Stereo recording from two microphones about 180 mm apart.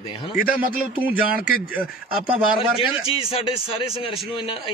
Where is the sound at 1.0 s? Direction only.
10° right (ahead or behind).